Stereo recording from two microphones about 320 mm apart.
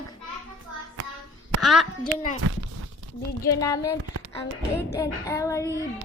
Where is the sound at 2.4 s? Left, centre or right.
Right.